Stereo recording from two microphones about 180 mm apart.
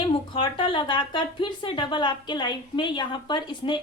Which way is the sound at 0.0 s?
30° left (ahead or behind).